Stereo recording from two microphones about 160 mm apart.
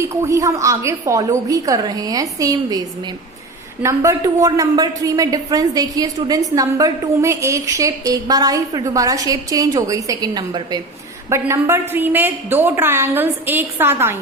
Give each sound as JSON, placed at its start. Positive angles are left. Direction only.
{"t": 0.0, "sound": "speech", "side_deg": -20}
{"t": 3.8, "sound": "a woman's voice", "side_deg": -20}